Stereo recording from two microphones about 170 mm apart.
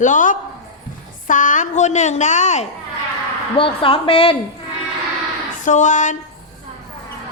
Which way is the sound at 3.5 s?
30° left (ahead or behind).